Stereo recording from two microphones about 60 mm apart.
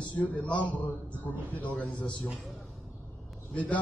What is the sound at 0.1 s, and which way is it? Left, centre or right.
A man's voice, left.